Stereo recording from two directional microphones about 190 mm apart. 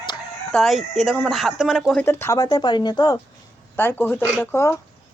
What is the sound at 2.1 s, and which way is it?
Speech, 15° left (ahead or behind).